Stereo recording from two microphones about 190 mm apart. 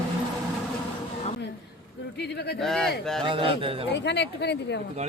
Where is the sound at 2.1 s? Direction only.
60° left (ahead or behind).